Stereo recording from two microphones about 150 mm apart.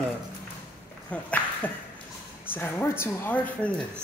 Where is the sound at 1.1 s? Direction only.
10° left (ahead or behind).